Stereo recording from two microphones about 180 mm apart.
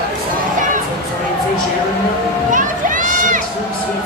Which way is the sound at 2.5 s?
45° right (ahead or behind).